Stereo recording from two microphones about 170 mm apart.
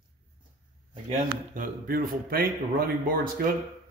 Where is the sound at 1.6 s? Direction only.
55° right (ahead or behind).